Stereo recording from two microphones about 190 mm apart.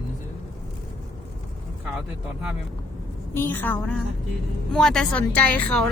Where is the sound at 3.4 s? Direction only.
10° left (ahead or behind).